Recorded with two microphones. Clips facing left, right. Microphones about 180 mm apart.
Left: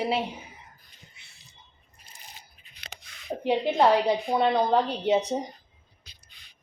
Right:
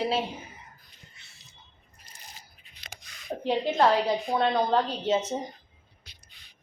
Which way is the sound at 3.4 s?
15° left (ahead or behind).